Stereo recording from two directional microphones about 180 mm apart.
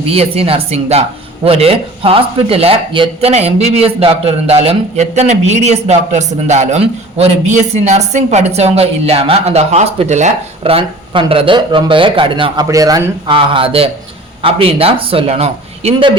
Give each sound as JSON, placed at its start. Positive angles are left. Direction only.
{"t": 0.1, "sound": "speech", "side_deg": -35}